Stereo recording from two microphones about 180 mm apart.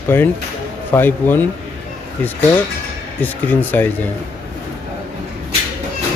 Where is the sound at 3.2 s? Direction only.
10° left (ahead or behind).